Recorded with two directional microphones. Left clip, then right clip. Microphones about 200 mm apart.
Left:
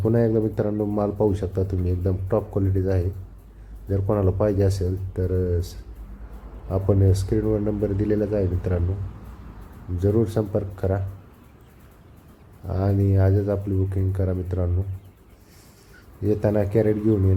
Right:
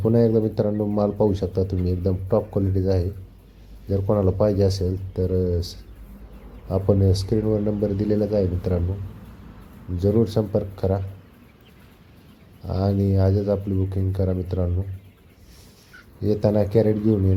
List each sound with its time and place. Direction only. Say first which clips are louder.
0.0 s speech: right 2 dB; 15° right (ahead or behind)
10.0 s speech: right 1 dB; 10° right (ahead or behind)
12.6 s speech: right 1 dB; 15° right (ahead or behind)
16.2 s speech: right 1 dB; 15° right (ahead or behind)